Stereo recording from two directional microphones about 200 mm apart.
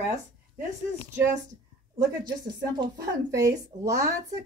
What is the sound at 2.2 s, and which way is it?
Speech, 20° right (ahead or behind).